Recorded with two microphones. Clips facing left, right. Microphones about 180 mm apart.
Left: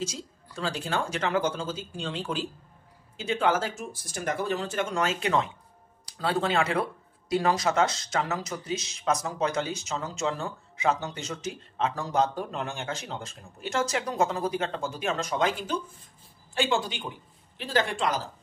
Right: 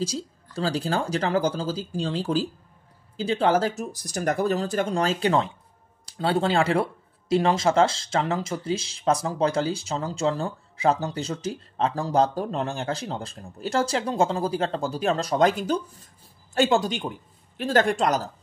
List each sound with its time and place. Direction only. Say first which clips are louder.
0.0 s a man's voice: right 6 dB; 35° right (ahead or behind)